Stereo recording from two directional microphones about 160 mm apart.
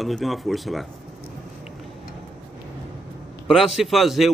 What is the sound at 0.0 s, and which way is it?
Speech, centre (ahead or behind).